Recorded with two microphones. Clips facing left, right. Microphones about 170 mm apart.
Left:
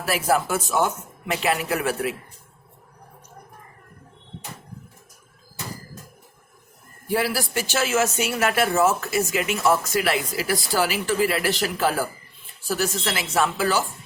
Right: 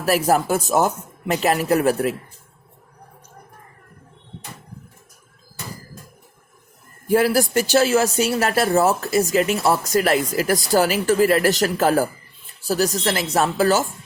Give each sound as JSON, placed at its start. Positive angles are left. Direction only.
{"t": 0.0, "sound": "speech", "side_deg": -40}
{"t": 7.1, "sound": "speech", "side_deg": -45}